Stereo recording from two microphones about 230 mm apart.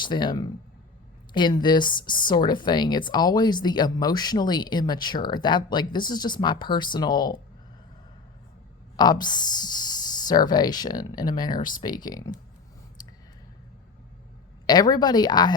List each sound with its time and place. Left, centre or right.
0.0 s speech: centre
9.0 s speech: centre
11.5 s speech: left
11.9 s speech: centre
13.0 s a sound: centre
14.7 s speech: centre